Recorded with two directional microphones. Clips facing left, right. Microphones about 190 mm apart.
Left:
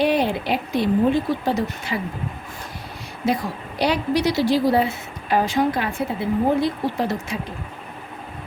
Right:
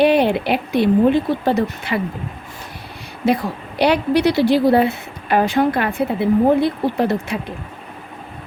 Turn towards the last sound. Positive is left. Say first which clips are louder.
# right 5 dB
turn(degrees=-60)  # may be behind; listen again after turning